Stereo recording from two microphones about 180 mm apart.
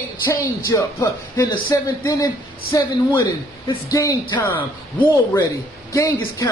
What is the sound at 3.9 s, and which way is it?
A man's voice, 20° left (ahead or behind).